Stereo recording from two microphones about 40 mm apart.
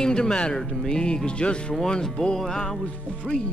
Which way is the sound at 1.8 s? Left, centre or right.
Centre.